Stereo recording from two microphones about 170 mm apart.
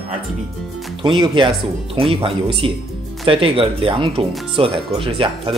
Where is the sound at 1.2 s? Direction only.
30° right (ahead or behind).